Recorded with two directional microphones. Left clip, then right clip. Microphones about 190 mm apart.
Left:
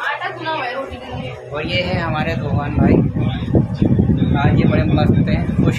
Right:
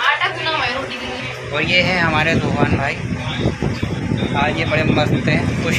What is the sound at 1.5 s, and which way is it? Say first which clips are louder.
Speech: right 5 dB; 10° right (ahead or behind).